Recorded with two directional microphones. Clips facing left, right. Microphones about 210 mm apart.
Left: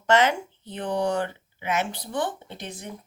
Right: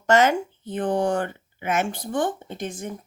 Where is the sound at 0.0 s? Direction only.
45° right (ahead or behind).